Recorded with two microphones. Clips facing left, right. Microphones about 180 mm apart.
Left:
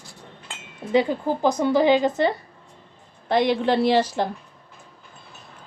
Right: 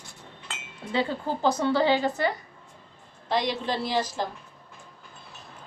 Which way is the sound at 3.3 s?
55° left (ahead or behind).